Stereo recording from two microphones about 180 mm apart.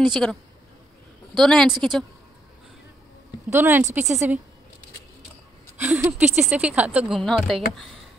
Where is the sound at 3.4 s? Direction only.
10° right (ahead or behind).